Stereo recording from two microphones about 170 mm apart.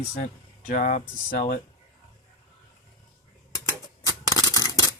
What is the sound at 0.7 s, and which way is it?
Speech, 50° left (ahead or behind).